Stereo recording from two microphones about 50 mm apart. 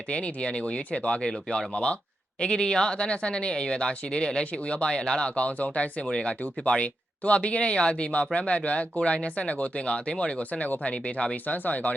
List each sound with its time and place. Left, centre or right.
0.1 s speech: left
6.1 s speech: centre
6.4 s speech: left
11.4 s speech: left